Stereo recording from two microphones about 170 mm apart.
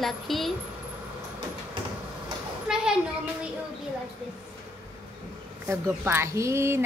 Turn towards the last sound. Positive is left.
turn(degrees=-15)  # may be behind; listen again after turning